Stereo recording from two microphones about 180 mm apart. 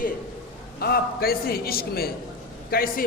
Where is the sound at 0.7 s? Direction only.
60° left (ahead or behind).